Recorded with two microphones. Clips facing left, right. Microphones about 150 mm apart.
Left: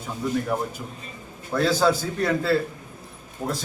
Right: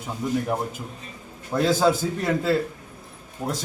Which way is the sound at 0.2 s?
20° right (ahead or behind).